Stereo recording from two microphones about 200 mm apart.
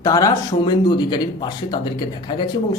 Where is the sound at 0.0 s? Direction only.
15° left (ahead or behind).